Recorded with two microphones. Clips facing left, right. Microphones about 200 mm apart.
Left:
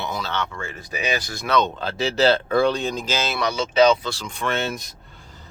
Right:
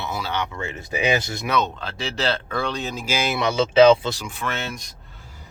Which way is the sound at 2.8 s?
5° right (ahead or behind).